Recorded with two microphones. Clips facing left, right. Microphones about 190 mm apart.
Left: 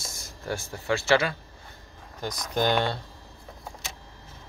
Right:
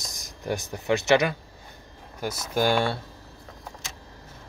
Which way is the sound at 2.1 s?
5° right (ahead or behind).